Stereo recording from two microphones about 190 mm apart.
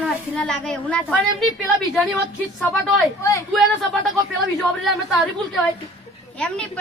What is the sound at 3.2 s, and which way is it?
Speech, 15° left (ahead or behind).